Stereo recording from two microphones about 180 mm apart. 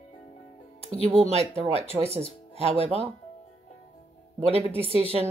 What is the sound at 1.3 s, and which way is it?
A woman's voice, 35° right (ahead or behind).